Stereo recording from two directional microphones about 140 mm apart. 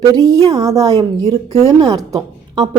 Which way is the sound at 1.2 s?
50° right (ahead or behind).